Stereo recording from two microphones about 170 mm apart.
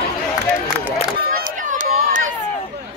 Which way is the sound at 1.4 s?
50° right (ahead or behind).